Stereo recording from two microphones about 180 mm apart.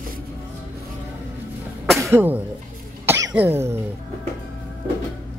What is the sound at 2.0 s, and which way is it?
Speech, 15° right (ahead or behind).